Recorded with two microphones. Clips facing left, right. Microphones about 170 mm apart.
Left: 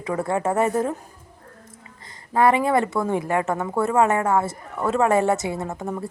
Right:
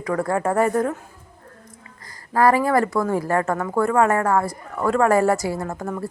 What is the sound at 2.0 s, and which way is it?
A woman's voice, 20° left (ahead or behind).